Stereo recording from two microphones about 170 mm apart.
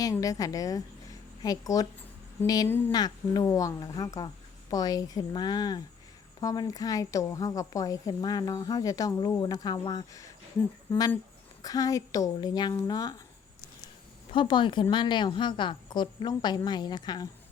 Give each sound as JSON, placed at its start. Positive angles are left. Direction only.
{"t": 0.0, "sound": "a woman's voice", "side_deg": 20}
{"t": 11.6, "sound": "a woman's voice", "side_deg": 20}
{"t": 14.3, "sound": "a woman's voice", "side_deg": 30}